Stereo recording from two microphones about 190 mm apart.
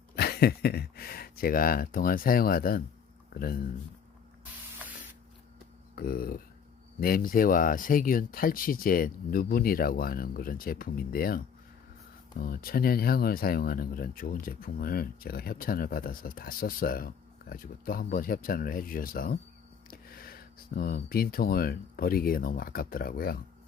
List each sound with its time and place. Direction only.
0.2 s speech: 55° left (ahead or behind)
6.0 s speech: 50° left (ahead or behind)